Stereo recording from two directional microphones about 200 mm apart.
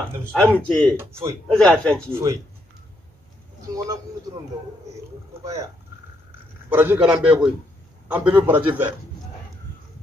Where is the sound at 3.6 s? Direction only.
15° right (ahead or behind).